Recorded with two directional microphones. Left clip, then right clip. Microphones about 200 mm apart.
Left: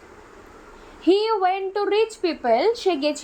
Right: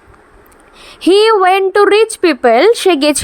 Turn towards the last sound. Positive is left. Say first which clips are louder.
# right 11 dB
turn(degrees=-55)  # may be behind; listen again after turning